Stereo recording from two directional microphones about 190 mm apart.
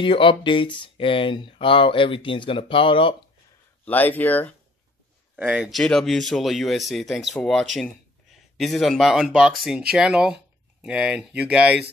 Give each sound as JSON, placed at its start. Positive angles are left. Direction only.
{"t": 0.0, "sound": "speech", "side_deg": 25}
{"t": 3.8, "sound": "speech", "side_deg": 10}
{"t": 5.3, "sound": "speech", "side_deg": -5}